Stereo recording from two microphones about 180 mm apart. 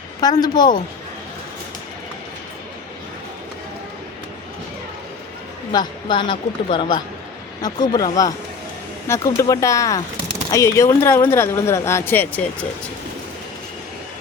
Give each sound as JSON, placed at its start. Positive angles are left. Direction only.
{"t": 0.2, "sound": "speech", "side_deg": 20}
{"t": 5.7, "sound": "speech", "side_deg": 25}